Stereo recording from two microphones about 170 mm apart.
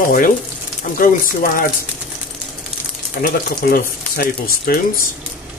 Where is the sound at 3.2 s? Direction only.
60° left (ahead or behind).